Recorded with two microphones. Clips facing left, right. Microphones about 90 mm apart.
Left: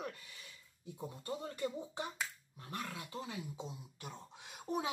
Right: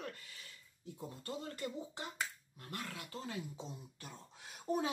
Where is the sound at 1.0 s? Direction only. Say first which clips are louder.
Left 2 dB; 20° left (ahead or behind).